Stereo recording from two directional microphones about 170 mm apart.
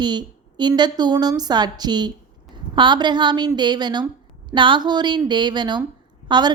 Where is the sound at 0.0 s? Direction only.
25° right (ahead or behind).